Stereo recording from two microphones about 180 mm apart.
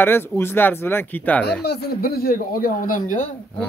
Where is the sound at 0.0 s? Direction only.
10° left (ahead or behind).